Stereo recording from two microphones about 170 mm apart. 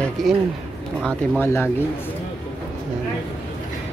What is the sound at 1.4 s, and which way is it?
Speech, 15° left (ahead or behind).